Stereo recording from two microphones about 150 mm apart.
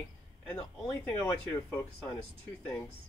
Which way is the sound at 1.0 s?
15° left (ahead or behind).